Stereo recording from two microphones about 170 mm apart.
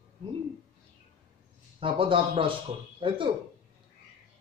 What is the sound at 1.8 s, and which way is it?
A man's voice, 30° right (ahead or behind).